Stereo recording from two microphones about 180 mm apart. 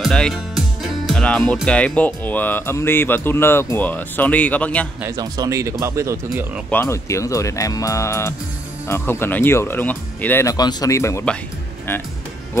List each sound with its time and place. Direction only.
0.0 s speech: centre (ahead or behind)
5.0 s speech: 20° right (ahead or behind)
6.7 s speech: 15° left (ahead or behind)